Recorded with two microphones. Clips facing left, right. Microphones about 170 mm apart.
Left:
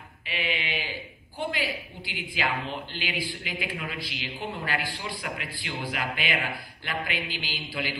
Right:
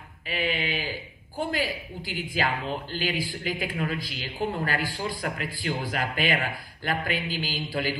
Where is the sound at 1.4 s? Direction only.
45° right (ahead or behind).